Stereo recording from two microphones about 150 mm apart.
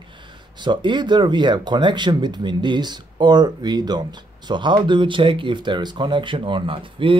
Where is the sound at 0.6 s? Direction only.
30° right (ahead or behind).